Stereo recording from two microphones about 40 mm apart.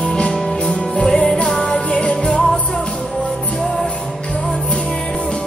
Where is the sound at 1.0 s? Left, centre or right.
Centre.